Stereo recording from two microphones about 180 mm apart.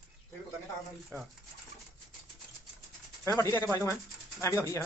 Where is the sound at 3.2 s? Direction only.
15° left (ahead or behind).